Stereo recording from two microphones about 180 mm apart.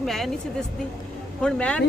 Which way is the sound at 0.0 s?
Centre (ahead or behind).